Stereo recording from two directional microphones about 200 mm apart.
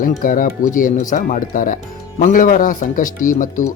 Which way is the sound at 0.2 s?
40° left (ahead or behind).